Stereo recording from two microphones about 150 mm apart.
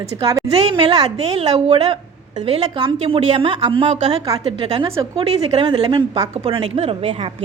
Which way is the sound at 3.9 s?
50° right (ahead or behind).